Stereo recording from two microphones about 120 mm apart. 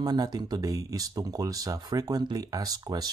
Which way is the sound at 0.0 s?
35° right (ahead or behind).